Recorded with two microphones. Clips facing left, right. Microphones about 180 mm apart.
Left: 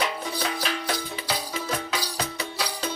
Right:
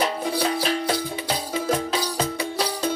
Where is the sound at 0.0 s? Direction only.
35° right (ahead or behind).